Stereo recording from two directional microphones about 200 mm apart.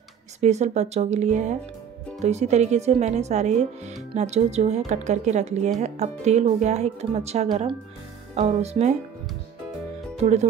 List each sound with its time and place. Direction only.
0.4 s speech: 35° right (ahead or behind)
10.1 s speech: 35° right (ahead or behind)